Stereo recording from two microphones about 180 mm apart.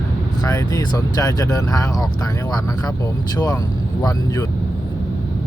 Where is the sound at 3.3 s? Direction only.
20° left (ahead or behind).